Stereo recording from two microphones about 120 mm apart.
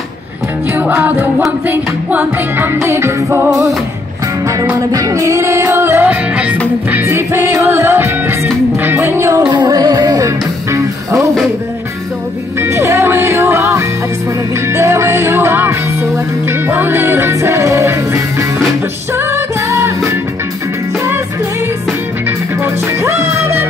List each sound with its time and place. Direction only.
0.7 s music: 15° right (ahead or behind)
4.7 s music: 30° right (ahead or behind)
9.5 s music: 35° right (ahead or behind)
12.5 s music: 20° right (ahead or behind)
23.0 s music: 20° right (ahead or behind)